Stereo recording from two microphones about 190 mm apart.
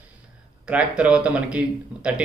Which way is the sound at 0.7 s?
5° right (ahead or behind).